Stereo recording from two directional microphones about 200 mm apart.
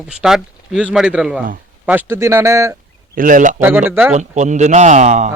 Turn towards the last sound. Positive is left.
turn(degrees=-35)  # may be behind; listen again after turning